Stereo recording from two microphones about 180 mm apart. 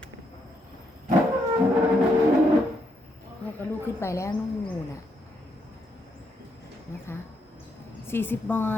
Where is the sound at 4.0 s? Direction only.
15° left (ahead or behind).